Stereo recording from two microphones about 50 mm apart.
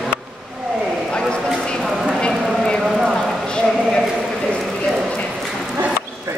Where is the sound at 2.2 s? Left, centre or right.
Centre.